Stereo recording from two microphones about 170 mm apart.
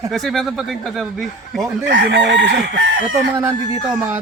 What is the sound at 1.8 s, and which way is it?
Chicken, 90° right.